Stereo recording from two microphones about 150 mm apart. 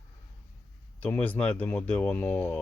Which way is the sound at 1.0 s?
10° left (ahead or behind).